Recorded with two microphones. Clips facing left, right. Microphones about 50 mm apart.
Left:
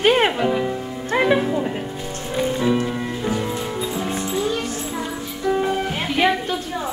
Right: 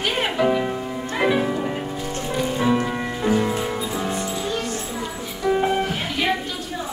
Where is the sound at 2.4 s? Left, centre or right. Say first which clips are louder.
Left 1 dB; centre.